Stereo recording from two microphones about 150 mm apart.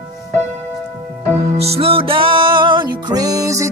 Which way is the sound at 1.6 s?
40° right (ahead or behind).